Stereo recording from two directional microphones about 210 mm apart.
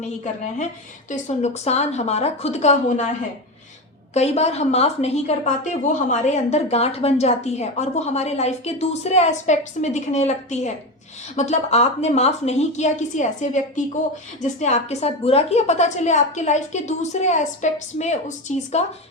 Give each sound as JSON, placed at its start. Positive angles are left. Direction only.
{"t": 1.1, "sound": "a woman's voice", "side_deg": 35}